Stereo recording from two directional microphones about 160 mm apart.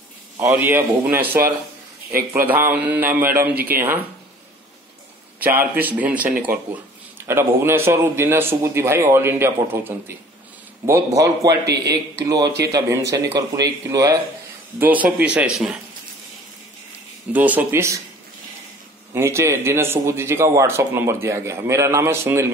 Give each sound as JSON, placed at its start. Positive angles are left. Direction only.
{"t": 0.4, "sound": "speech", "side_deg": -15}
{"t": 5.4, "sound": "speech", "side_deg": -10}
{"t": 11.6, "sound": "speech", "side_deg": -90}
{"t": 12.3, "sound": "speech", "side_deg": -20}
{"t": 17.3, "sound": "speech", "side_deg": -10}
{"t": 19.1, "sound": "speech", "side_deg": -15}